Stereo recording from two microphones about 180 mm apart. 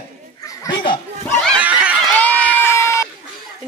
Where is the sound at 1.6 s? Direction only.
5° right (ahead or behind).